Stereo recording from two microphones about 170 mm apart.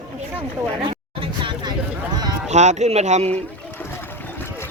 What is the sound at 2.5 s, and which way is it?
Speech, 40° right (ahead or behind).